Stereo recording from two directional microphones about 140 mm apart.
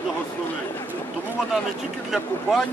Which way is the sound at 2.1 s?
Centre (ahead or behind).